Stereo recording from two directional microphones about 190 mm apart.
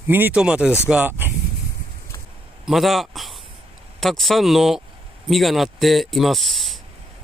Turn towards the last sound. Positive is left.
turn(degrees=0)  # may be behind; listen again after turning